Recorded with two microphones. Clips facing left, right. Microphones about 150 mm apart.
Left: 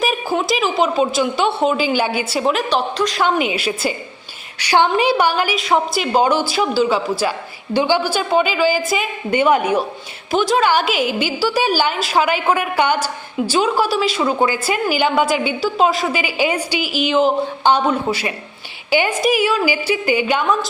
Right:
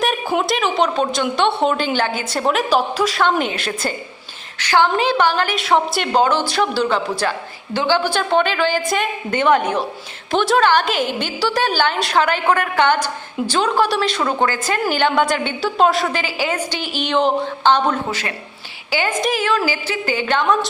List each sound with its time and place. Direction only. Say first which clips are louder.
0.0 s a woman's voice: even; 5° left (ahead or behind)
2.4 s a woman's voice: right 2 dB; centre (ahead or behind)
3.2 s a woman's voice: left 1 dB; 10° left (ahead or behind)
5.5 s a woman's voice: even; centre (ahead or behind)
10.3 s a woman's voice: even; centre (ahead or behind)
16.2 s a woman's voice: left 3 dB; 15° left (ahead or behind)